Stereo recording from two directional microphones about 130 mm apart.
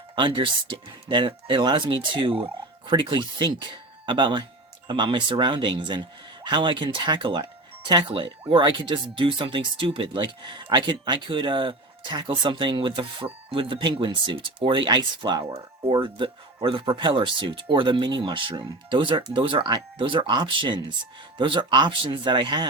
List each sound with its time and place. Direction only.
0.2 s speech: 40° right (ahead or behind)